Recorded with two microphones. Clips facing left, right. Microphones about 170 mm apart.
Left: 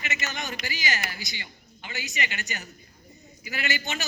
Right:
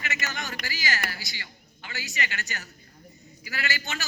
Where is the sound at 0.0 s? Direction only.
20° left (ahead or behind).